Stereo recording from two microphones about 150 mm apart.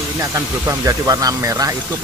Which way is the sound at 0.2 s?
20° right (ahead or behind).